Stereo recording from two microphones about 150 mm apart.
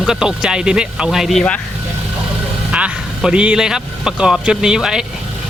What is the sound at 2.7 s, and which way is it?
Speech, 5° right (ahead or behind).